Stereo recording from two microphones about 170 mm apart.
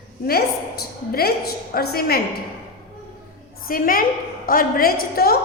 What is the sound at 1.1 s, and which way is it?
A woman's voice, 65° left (ahead or behind).